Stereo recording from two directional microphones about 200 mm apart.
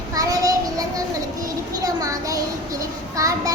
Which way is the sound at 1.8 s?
15° right (ahead or behind).